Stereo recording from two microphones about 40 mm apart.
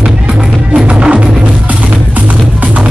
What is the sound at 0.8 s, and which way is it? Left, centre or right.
Music, right.